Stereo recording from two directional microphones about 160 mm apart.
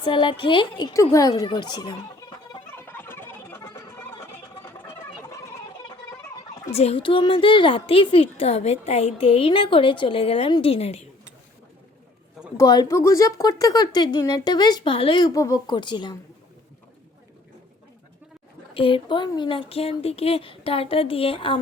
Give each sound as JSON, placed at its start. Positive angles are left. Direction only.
{"t": 0.0, "sound": "a woman's voice", "side_deg": 30}
{"t": 2.7, "sound": "fowl", "side_deg": 15}
{"t": 6.7, "sound": "a woman's voice", "side_deg": 40}
{"t": 12.5, "sound": "speech", "side_deg": 25}
{"t": 18.7, "sound": "a woman's voice", "side_deg": 35}